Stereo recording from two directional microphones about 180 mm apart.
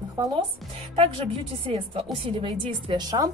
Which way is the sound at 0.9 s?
30° right (ahead or behind).